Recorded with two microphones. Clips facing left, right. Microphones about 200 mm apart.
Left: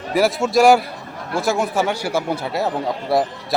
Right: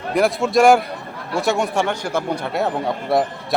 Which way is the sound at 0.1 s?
5° left (ahead or behind).